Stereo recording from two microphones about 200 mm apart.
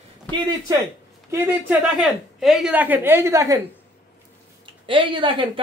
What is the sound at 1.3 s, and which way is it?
A woman's voice, 10° right (ahead or behind).